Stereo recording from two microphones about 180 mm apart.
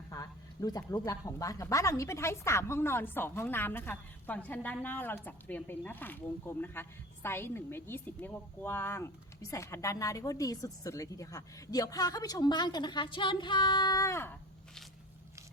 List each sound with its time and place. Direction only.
0.1 s a woman's voice: 20° left (ahead or behind)